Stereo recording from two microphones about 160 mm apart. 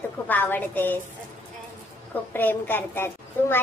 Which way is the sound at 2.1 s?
10° left (ahead or behind).